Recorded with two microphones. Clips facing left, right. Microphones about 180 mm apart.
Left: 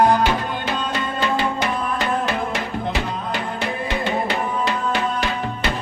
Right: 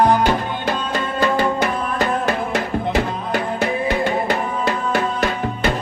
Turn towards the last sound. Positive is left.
turn(degrees=-45)  # may be behind; listen again after turning